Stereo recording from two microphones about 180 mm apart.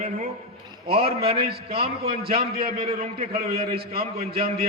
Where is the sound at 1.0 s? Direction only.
60° right (ahead or behind).